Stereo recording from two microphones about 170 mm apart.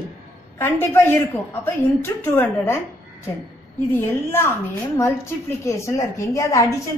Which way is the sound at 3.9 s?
15° left (ahead or behind).